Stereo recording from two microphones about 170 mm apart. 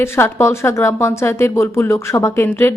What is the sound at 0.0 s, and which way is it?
Speech, 15° left (ahead or behind).